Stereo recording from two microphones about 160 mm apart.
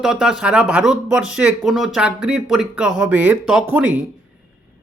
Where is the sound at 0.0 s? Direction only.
5° right (ahead or behind).